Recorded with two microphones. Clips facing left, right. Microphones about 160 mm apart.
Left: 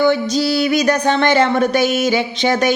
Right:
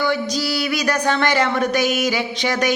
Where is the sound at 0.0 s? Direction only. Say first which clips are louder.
Left 6 dB; 25° left (ahead or behind).